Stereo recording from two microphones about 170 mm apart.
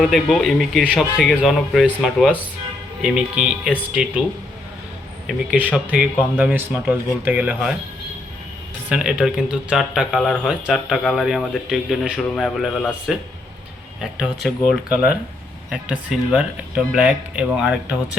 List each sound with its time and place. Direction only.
0.0 s speech: centre (ahead or behind)
5.5 s speech: 10° right (ahead or behind)
8.9 s speech: 5° right (ahead or behind)